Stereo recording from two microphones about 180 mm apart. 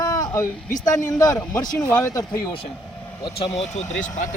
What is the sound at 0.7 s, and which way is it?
Speech, 45° left (ahead or behind).